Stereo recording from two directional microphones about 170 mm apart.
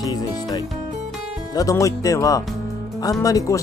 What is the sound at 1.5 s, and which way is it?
Speech, 20° left (ahead or behind).